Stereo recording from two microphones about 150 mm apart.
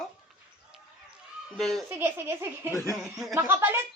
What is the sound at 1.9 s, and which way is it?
A child's voice, 15° right (ahead or behind).